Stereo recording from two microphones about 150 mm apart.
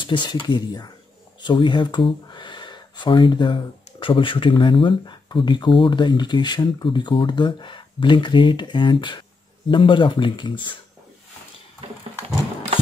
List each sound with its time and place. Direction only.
0.0 s speech: 30° left (ahead or behind)